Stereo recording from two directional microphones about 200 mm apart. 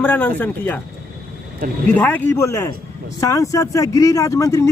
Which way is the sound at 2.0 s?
10° left (ahead or behind).